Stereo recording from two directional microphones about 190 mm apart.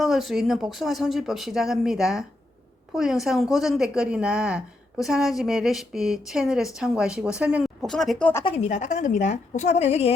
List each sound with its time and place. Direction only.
0.0 s a woman's voice: centre (ahead or behind)
8.4 s a woman's voice: 35° left (ahead or behind)